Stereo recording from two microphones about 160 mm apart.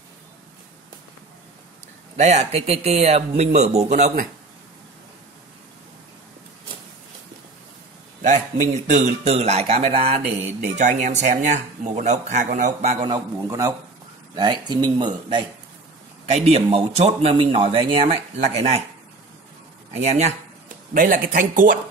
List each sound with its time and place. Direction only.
2.1 s speech: 45° right (ahead or behind)
8.9 s speech: 45° right (ahead or behind)
10.4 s speech: 50° right (ahead or behind)
13.0 s speech: 20° right (ahead or behind)
16.3 s speech: 40° right (ahead or behind)
19.9 s speech: 45° right (ahead or behind)